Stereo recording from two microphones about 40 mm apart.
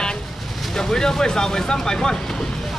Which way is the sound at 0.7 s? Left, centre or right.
Centre.